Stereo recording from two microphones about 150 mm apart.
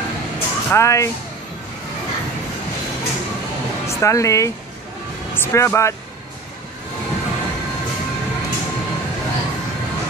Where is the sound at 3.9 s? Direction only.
20° left (ahead or behind).